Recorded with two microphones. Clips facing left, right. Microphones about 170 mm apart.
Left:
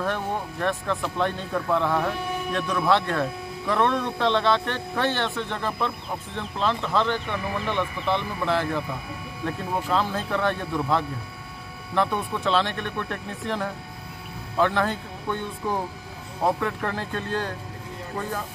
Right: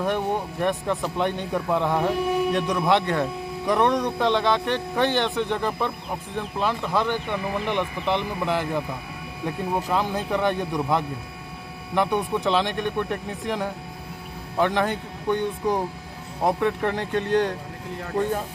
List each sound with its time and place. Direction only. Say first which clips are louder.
0.0 s speech: right 3 dB; 15° right (ahead or behind)